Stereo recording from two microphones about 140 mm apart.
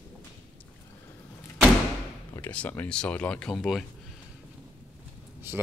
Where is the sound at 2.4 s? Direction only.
10° left (ahead or behind).